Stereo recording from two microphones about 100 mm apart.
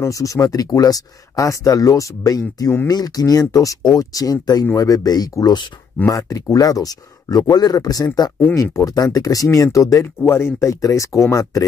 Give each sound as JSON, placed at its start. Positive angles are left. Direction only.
{"t": 0.0, "sound": "speech", "side_deg": 35}